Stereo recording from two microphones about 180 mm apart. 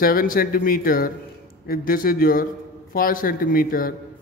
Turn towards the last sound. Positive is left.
turn(degrees=55)  # may be behind; listen again after turning